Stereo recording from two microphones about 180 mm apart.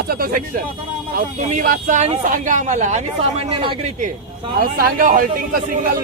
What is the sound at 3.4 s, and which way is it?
Speech, 30° right (ahead or behind).